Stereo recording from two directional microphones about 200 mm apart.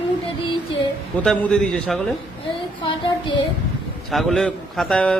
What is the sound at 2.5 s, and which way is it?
Speech, 25° left (ahead or behind).